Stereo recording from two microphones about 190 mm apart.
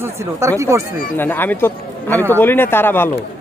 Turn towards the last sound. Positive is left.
turn(degrees=10)  # may be behind; listen again after turning